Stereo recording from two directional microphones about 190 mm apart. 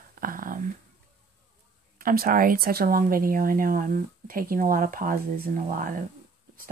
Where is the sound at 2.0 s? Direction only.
50° right (ahead or behind).